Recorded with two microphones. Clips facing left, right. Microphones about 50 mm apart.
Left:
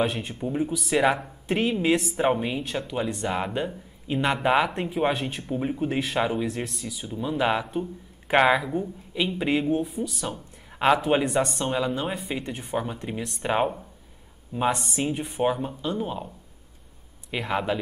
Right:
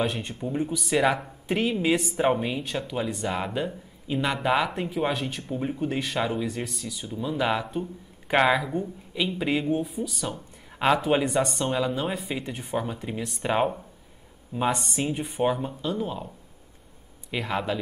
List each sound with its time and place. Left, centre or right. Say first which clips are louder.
0.0 s speech: left 2 dB; centre
17.3 s speech: left 1 dB; centre